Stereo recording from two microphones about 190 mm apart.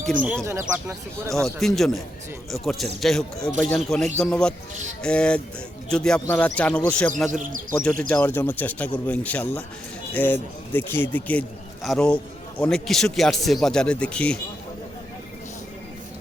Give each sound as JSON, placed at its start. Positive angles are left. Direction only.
{"t": 0.0, "sound": "speech", "side_deg": -45}
{"t": 0.4, "sound": "speech", "side_deg": -15}
{"t": 1.3, "sound": "a man's voice", "side_deg": 0}